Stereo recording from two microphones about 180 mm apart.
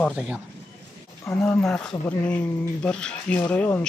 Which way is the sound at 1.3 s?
15° left (ahead or behind).